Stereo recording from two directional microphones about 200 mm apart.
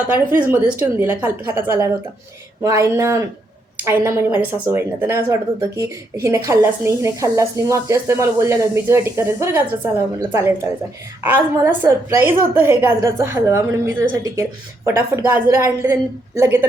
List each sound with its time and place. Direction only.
0.5 s a woman's voice: 10° right (ahead or behind)